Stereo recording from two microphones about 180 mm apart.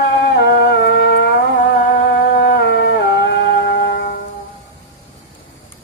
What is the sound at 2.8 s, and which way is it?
Music, 90° left.